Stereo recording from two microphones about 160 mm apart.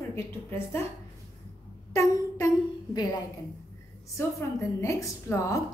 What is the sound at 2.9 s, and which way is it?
Speech, 25° left (ahead or behind).